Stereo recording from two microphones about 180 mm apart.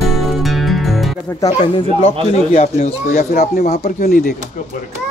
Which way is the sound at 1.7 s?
35° left (ahead or behind).